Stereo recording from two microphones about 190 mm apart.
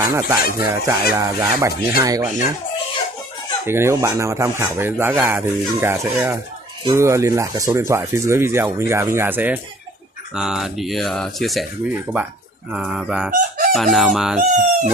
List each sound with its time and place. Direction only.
0.0 s speech: 15° right (ahead or behind)
3.6 s speech: 15° right (ahead or behind)
13.3 s chicken: 45° right (ahead or behind)
13.9 s speech: centre (ahead or behind)